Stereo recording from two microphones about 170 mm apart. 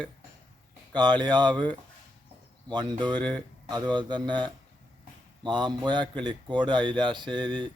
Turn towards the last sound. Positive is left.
turn(degrees=-30)  # may be behind; listen again after turning